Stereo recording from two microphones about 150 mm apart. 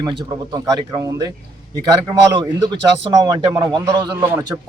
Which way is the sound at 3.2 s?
25° right (ahead or behind).